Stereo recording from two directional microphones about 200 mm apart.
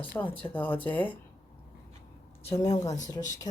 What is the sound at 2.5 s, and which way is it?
Speech, 15° left (ahead or behind).